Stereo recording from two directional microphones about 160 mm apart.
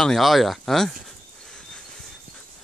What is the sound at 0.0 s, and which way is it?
Speech, centre (ahead or behind).